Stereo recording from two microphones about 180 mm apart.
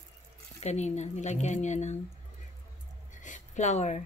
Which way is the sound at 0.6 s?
40° left (ahead or behind).